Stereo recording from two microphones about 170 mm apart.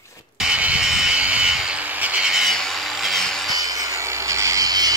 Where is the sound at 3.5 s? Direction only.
20° right (ahead or behind).